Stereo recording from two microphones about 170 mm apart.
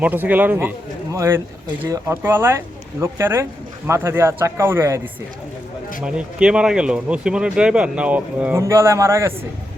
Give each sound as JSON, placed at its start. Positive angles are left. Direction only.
{"t": 0.0, "sound": "speech", "side_deg": -10}